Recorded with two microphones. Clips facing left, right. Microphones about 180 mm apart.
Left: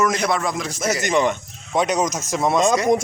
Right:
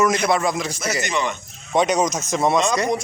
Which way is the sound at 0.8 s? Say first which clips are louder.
Left 7 dB; 50° left (ahead or behind).